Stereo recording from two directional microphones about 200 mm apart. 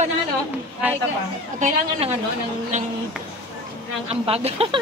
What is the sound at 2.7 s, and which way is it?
Speech, 35° right (ahead or behind).